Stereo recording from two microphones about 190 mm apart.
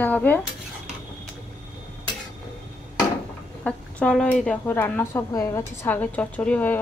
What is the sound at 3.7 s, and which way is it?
Speech, 5° left (ahead or behind).